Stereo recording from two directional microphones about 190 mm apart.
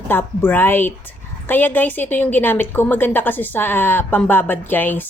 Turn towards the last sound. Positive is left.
turn(degrees=10)  # may be behind; listen again after turning